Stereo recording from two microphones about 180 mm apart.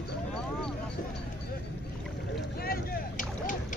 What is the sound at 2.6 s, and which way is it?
Boat, 55° left (ahead or behind).